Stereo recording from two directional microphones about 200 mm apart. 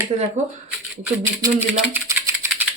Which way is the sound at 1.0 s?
15° right (ahead or behind).